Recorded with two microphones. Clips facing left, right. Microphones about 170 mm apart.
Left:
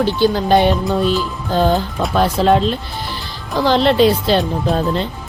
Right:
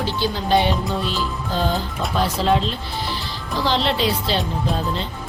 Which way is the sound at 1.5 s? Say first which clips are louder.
Left 8 dB; 60° left (ahead or behind).